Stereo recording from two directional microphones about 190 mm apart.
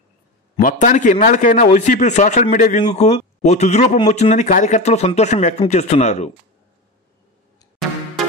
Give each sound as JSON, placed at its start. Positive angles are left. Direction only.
{"t": 0.6, "sound": "speech", "side_deg": 45}